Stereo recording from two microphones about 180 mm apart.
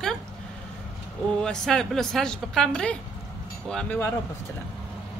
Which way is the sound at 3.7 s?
5° left (ahead or behind).